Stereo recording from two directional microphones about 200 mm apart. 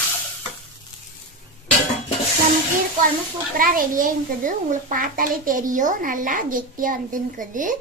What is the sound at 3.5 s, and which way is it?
A child's voice, 45° right (ahead or behind).